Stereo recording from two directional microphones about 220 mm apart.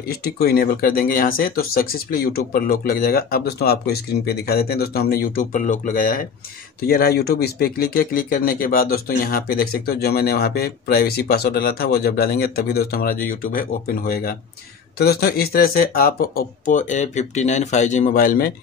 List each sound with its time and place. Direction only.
0.1 s speech: 45° left (ahead or behind)